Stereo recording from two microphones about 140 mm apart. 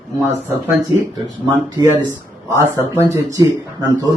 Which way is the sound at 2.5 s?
20° right (ahead or behind).